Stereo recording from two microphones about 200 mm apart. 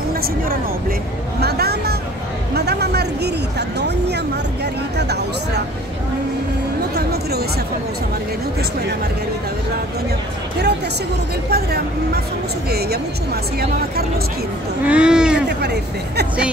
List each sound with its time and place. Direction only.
0.1 s speech: 50° right (ahead or behind)
7.0 s a sound: 50° right (ahead or behind)
11.5 s speech: 50° right (ahead or behind)
14.9 s speech: 5° right (ahead or behind)
15.4 s speech: 55° right (ahead or behind)